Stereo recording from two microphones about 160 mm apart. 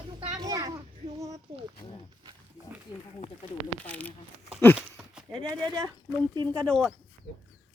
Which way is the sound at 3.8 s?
10° left (ahead or behind).